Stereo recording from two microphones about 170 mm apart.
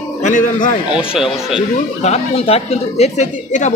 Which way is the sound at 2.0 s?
35° left (ahead or behind).